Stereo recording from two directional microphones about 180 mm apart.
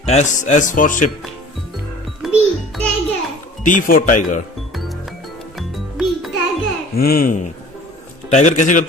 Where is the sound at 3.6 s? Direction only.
45° left (ahead or behind).